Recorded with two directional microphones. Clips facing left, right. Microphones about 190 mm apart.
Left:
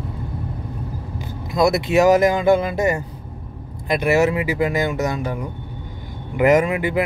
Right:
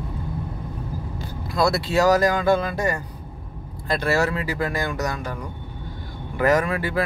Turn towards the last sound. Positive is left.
turn(degrees=20)  # may be behind; listen again after turning